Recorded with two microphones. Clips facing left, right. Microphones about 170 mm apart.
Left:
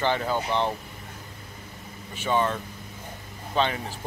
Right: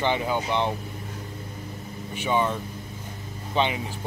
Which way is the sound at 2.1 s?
10° right (ahead or behind).